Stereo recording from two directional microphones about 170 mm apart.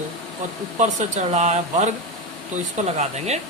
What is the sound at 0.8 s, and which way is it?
Speech, 45° right (ahead or behind).